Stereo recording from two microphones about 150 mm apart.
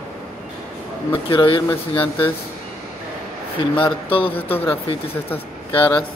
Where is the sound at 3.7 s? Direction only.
35° left (ahead or behind).